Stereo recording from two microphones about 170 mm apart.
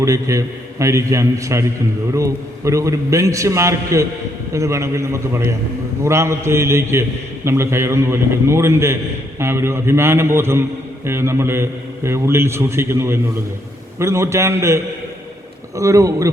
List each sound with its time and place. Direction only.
0.0 s a man's voice: 20° right (ahead or behind)